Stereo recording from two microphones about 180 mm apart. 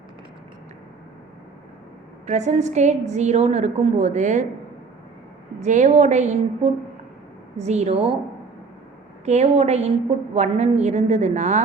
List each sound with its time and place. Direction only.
2.2 s a woman's voice: 40° right (ahead or behind)
5.5 s a woman's voice: 40° right (ahead or behind)
9.2 s a woman's voice: 40° right (ahead or behind)